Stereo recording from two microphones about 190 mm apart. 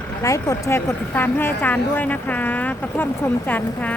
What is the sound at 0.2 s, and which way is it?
A woman's voice, 15° left (ahead or behind).